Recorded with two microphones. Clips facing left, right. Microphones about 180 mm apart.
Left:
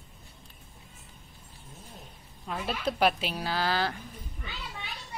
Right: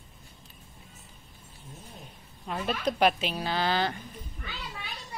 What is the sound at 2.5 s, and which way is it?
Speech, 5° left (ahead or behind).